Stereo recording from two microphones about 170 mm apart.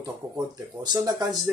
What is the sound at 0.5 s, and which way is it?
Speech, 25° right (ahead or behind).